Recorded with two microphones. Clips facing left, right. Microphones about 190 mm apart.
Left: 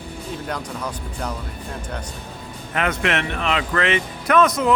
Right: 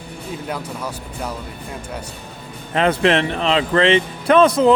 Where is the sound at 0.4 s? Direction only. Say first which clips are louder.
Right 2 dB; 5° right (ahead or behind).